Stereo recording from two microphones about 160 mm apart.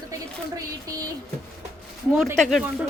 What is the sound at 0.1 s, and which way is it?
Speech, 20° right (ahead or behind).